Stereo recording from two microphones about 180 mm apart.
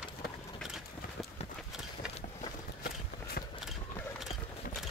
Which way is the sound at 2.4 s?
55° left (ahead or behind).